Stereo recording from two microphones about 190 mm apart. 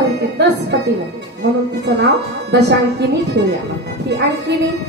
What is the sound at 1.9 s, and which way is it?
A woman's voice, 65° right (ahead or behind).